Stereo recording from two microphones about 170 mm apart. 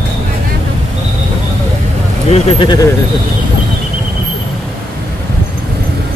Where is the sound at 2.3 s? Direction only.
40° left (ahead or behind).